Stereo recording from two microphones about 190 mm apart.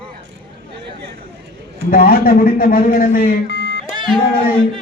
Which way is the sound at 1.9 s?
50° left (ahead or behind).